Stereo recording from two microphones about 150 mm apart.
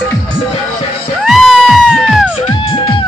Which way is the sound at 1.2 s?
Centre (ahead or behind).